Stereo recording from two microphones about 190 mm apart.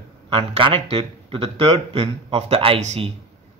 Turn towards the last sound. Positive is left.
turn(degrees=-35)  # may be behind; listen again after turning